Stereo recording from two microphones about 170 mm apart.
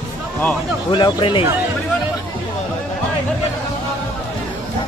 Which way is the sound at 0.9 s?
30° left (ahead or behind).